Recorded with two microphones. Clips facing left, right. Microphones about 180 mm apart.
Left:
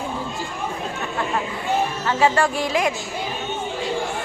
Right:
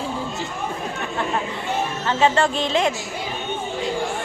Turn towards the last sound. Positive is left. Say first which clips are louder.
# right 1 dB
turn(degrees=-25)  # may be behind; listen again after turning